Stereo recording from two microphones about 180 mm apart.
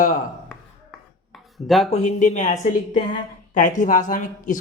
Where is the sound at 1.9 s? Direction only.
40° left (ahead or behind).